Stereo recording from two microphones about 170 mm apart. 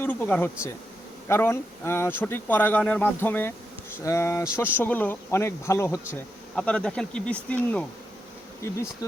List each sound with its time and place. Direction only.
0.0 s speech: 10° left (ahead or behind)
6.6 s speech: 5° left (ahead or behind)